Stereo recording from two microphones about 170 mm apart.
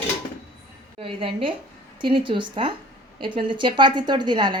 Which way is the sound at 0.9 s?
35° right (ahead or behind).